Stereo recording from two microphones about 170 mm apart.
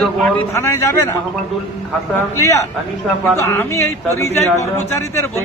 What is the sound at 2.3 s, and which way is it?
Speech, 20° left (ahead or behind).